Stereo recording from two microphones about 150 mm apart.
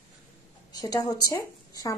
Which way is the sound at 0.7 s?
25° left (ahead or behind).